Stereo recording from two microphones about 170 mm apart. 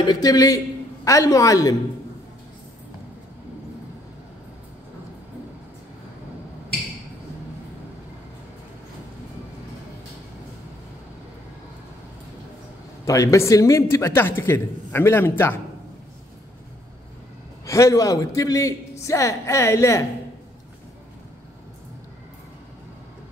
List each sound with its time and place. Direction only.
0.0 s a man's voice: 25° left (ahead or behind)
13.0 s a man's voice: 20° left (ahead or behind)
17.6 s a man's voice: 20° left (ahead or behind)